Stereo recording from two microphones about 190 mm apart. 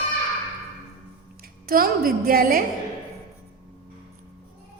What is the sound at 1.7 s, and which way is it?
Speech, 50° right (ahead or behind).